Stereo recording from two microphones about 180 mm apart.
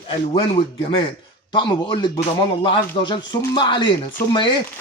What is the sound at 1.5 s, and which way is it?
Speech, 25° left (ahead or behind).